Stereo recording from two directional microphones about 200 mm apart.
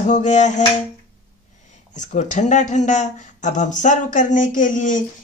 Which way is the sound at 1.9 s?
35° left (ahead or behind).